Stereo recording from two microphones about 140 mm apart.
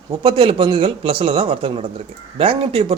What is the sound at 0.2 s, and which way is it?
Speech, 40° right (ahead or behind).